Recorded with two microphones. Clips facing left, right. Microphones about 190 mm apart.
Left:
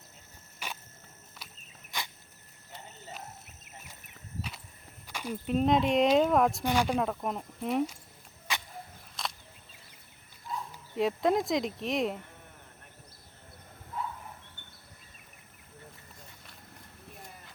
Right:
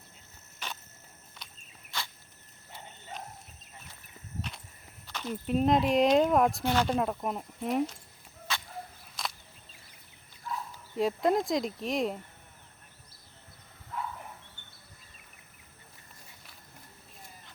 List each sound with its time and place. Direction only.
0.6 s cricket: 10° left (ahead or behind)
1.4 s walk: 5° left (ahead or behind)
1.9 s cricket: 15° left (ahead or behind)
5.0 s a sound: 10° left (ahead or behind)
5.5 s speech: centre (ahead or behind)
6.6 s speech: 15° left (ahead or behind)
6.8 s speech: centre (ahead or behind)
8.5 s a sound: 15° left (ahead or behind)
9.2 s a sound: centre (ahead or behind)
10.9 s speech: centre (ahead or behind)